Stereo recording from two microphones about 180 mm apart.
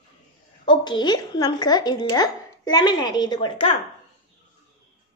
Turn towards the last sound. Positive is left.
turn(degrees=25)  # may be behind; listen again after turning